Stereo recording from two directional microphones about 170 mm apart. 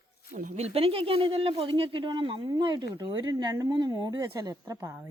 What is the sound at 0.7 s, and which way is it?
Speech, 35° right (ahead or behind).